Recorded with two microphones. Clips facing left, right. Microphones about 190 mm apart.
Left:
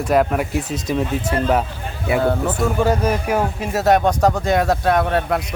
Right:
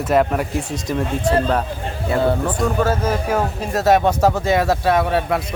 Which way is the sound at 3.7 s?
Centre (ahead or behind).